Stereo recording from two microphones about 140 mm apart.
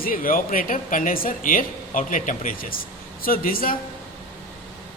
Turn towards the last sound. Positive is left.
turn(degrees=90)